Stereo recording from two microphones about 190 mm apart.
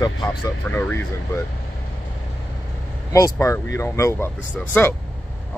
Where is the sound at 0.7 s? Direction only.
10° left (ahead or behind).